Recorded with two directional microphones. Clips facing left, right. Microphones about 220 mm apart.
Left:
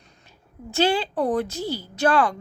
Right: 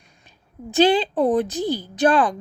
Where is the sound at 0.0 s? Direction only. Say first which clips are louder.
Left 2 dB; 15° right (ahead or behind).